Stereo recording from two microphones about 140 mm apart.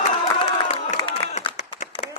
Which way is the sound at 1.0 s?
30° left (ahead or behind).